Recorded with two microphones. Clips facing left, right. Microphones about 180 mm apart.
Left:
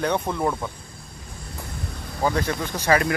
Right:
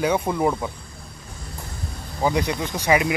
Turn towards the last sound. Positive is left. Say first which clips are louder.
# right 1 dB
turn(degrees=-15)  # may be behind; listen again after turning